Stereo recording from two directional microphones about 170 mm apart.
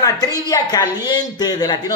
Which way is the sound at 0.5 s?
20° left (ahead or behind).